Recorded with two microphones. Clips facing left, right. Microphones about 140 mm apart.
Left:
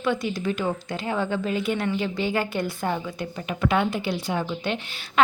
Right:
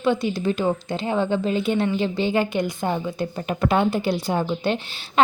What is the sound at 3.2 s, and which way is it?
A woman's voice, 35° right (ahead or behind).